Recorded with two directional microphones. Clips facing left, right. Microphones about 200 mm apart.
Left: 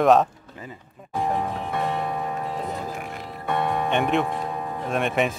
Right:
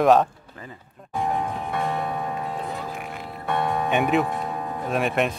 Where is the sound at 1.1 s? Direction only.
Centre (ahead or behind).